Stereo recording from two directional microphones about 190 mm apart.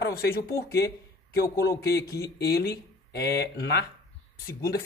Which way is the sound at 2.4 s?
55° left (ahead or behind).